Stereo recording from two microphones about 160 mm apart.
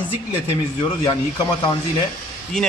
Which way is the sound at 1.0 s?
25° left (ahead or behind).